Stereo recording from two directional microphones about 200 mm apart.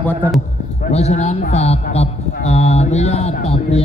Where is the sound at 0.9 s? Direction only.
35° left (ahead or behind).